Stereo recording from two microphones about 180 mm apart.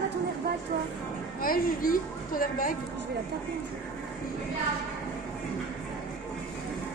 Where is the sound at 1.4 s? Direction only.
50° left (ahead or behind).